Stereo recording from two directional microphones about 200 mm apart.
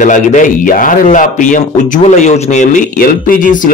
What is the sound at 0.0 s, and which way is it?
Speech, 40° left (ahead or behind).